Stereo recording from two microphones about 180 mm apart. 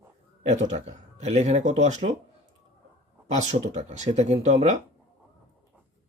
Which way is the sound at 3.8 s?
40° right (ahead or behind).